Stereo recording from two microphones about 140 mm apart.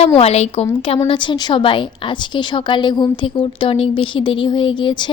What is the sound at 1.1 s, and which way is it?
A woman's voice, 35° left (ahead or behind).